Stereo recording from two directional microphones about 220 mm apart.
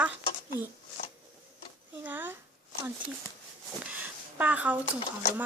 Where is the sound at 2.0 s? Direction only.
10° right (ahead or behind).